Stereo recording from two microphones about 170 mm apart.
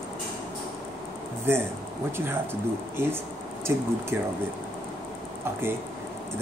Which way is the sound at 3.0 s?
15° right (ahead or behind).